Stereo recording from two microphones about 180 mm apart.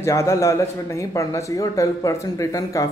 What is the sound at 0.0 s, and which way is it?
Speech, 15° left (ahead or behind).